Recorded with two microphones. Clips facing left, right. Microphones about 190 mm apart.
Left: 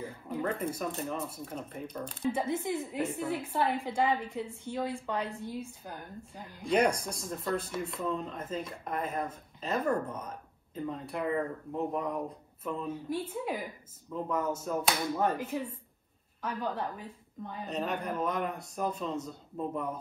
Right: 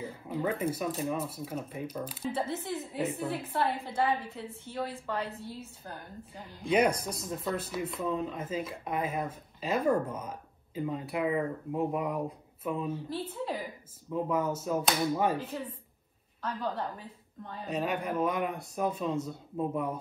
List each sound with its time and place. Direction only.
0.0 s speech: 5° right (ahead or behind)
2.3 s a woman's voice: 10° left (ahead or behind)
6.6 s speech: 5° right (ahead or behind)
13.1 s a woman's voice: 10° left (ahead or behind)
14.1 s speech: 5° right (ahead or behind)
15.3 s a woman's voice: 15° left (ahead or behind)
17.6 s speech: 5° right (ahead or behind)